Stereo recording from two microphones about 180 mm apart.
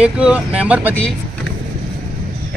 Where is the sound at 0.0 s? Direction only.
5° right (ahead or behind).